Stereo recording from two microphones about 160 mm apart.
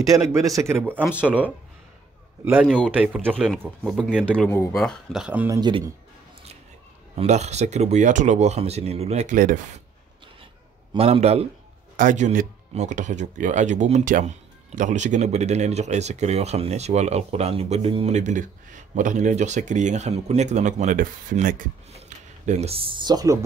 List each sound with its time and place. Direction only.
0.0 s a man's voice: 20° right (ahead or behind)
3.5 s speech: centre (ahead or behind)
4.5 s speech: 15° left (ahead or behind)
4.7 s speech: centre (ahead or behind)
5.5 s speech: 30° right (ahead or behind)
7.2 s speech: 45° right (ahead or behind)
10.9 s speech: 40° right (ahead or behind)
12.0 s speech: 55° right (ahead or behind)
22.5 s speech: 40° right (ahead or behind); by 23.4 s 20° right (ahead or behind)